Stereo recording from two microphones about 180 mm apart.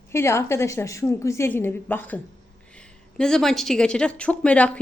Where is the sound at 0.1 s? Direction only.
15° left (ahead or behind).